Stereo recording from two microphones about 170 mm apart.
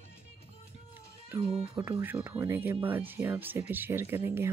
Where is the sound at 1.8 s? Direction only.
10° right (ahead or behind).